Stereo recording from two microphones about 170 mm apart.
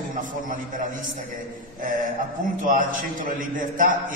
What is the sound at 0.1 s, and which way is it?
Speech, 50° right (ahead or behind).